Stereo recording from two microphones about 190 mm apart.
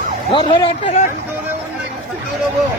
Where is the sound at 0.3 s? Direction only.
25° left (ahead or behind).